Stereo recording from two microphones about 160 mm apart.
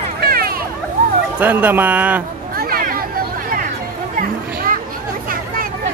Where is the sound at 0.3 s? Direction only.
70° right (ahead or behind).